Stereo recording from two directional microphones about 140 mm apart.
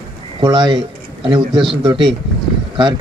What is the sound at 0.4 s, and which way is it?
A man's voice, 35° right (ahead or behind).